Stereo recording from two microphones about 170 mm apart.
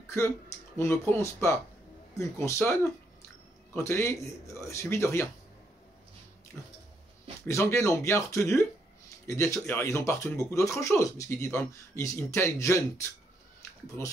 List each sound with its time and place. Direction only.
0.1 s speech: 15° left (ahead or behind)
6.5 s a sound: centre (ahead or behind)
7.4 s speech: 15° left (ahead or behind)